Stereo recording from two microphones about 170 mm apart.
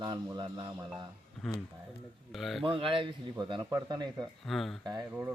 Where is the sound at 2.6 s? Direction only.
30° right (ahead or behind).